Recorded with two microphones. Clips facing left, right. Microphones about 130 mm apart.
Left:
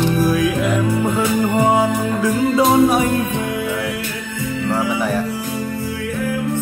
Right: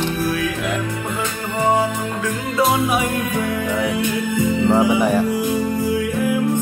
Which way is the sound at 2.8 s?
40° left (ahead or behind).